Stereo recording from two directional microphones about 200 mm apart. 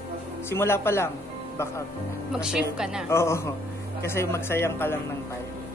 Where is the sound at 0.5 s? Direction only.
10° left (ahead or behind).